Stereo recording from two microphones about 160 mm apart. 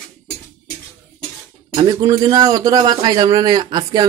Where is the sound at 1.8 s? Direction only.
25° right (ahead or behind).